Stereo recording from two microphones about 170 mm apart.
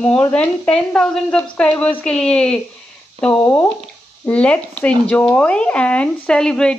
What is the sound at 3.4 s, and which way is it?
A woman's voice, 15° left (ahead or behind).